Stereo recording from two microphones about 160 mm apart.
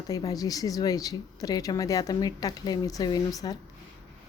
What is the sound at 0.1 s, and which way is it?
Speech, 20° left (ahead or behind).